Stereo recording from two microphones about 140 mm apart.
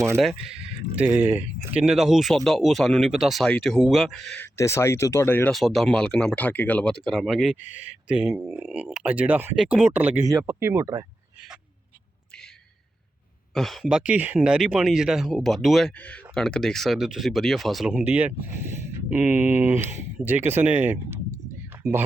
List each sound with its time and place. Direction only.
0.9 s speech: 10° right (ahead or behind)
1.8 s speech: centre (ahead or behind)
4.4 s speech: 20° left (ahead or behind)
5.5 s speech: centre (ahead or behind)
7.6 s speech: 60° left (ahead or behind)
8.0 s speech: 5° right (ahead or behind)
13.5 s speech: centre (ahead or behind)